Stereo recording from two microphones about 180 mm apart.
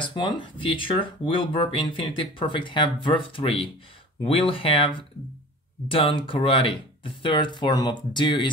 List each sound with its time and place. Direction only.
0.0 s speech: 25° left (ahead or behind)